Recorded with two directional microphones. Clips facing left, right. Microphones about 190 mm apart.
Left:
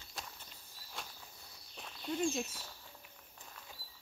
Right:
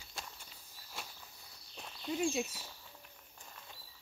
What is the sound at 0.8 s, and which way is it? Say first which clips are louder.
Walk: even; 5° right (ahead or behind).